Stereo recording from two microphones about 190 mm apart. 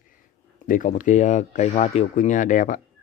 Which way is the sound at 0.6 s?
45° left (ahead or behind).